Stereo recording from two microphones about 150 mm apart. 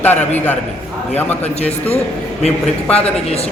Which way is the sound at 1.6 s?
45° left (ahead or behind).